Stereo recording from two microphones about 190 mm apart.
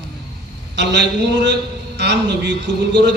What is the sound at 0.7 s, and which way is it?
A man's voice, 65° right (ahead or behind).